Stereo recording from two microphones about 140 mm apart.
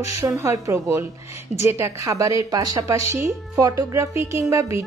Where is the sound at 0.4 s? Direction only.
25° right (ahead or behind).